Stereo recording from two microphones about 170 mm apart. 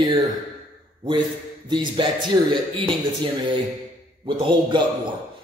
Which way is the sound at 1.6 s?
25° right (ahead or behind).